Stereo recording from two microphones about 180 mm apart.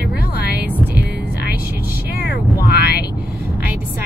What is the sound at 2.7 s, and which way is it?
Vehicle, 65° left (ahead or behind).